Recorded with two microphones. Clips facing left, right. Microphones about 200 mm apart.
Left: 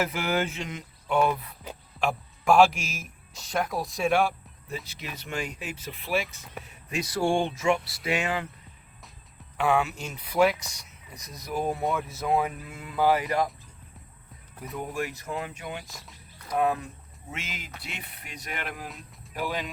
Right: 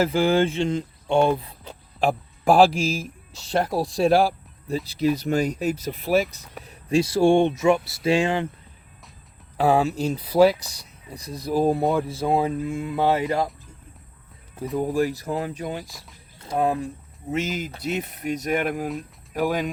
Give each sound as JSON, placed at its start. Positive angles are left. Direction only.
{"t": 0.0, "sound": "speech", "side_deg": -30}
{"t": 6.7, "sound": "speech", "side_deg": -30}
{"t": 9.6, "sound": "speech", "side_deg": -35}
{"t": 14.8, "sound": "speech", "side_deg": -35}